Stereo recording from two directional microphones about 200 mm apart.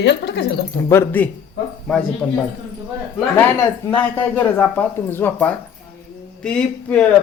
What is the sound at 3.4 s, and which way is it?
A man's voice, 10° left (ahead or behind).